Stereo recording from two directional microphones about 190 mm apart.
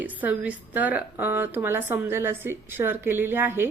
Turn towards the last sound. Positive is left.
turn(degrees=-10)  # may be behind; listen again after turning